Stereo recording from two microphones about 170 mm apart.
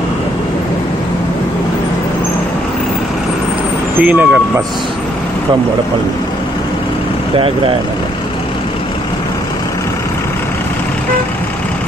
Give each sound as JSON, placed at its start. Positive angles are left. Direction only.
{"t": 4.0, "sound": "speech", "side_deg": -5}
{"t": 7.3, "sound": "speech", "side_deg": -30}